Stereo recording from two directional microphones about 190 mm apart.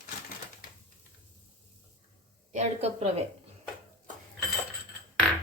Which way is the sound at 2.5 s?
35° right (ahead or behind).